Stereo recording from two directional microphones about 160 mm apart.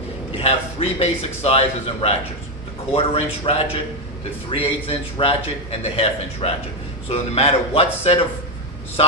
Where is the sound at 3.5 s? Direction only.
35° left (ahead or behind).